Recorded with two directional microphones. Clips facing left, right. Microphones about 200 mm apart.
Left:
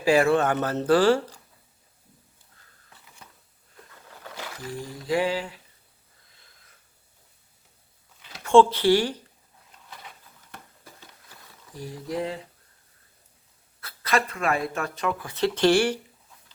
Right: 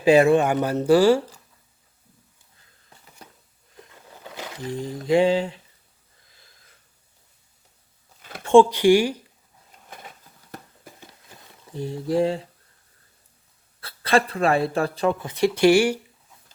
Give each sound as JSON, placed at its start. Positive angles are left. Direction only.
{"t": 0.0, "sound": "speech", "side_deg": -20}
{"t": 3.8, "sound": "a sound", "side_deg": -20}
{"t": 5.0, "sound": "mantra", "side_deg": -25}
{"t": 8.4, "sound": "speech", "side_deg": -15}
{"t": 10.8, "sound": "a sound", "side_deg": -20}
{"t": 13.8, "sound": "speech", "side_deg": -30}
{"t": 15.4, "sound": "speech", "side_deg": -10}